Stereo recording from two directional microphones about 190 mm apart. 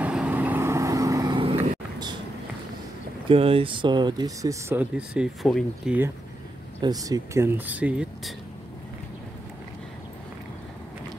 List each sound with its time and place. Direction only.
0.0 s vehicle: 5° right (ahead or behind); by 2.1 s 25° right (ahead or behind)
3.3 s speech: 30° right (ahead or behind); by 5.9 s centre (ahead or behind)
6.8 s speech: 20° right (ahead or behind)